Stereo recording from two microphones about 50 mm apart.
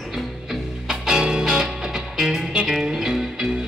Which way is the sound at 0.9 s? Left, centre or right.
Centre.